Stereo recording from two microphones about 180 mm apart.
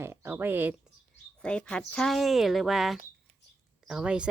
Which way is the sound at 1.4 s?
5° left (ahead or behind).